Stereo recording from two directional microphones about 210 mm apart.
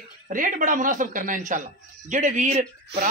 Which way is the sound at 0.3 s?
40° right (ahead or behind).